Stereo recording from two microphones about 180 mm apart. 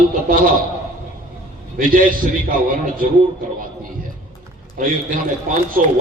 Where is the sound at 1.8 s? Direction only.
50° right (ahead or behind).